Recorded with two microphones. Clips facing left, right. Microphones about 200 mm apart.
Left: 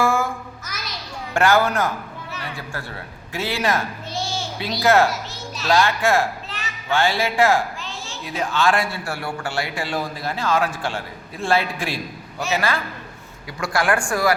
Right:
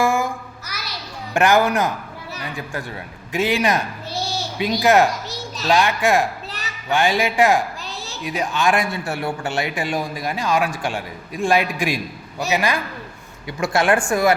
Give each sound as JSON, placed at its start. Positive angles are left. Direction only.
{"t": 0.0, "sound": "music", "side_deg": -15}
{"t": 1.3, "sound": "speech", "side_deg": -15}
{"t": 3.3, "sound": "speech", "side_deg": -15}
{"t": 4.1, "sound": "a sound", "side_deg": -40}
{"t": 4.5, "sound": "speech", "side_deg": -15}
{"t": 7.8, "sound": "a sound", "side_deg": -35}
{"t": 8.2, "sound": "speech", "side_deg": -15}